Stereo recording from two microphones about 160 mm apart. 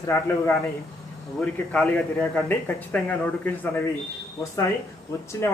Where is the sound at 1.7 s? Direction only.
10° left (ahead or behind).